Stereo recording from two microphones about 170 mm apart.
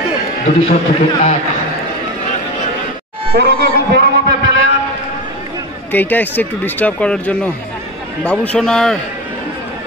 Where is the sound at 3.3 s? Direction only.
65° right (ahead or behind).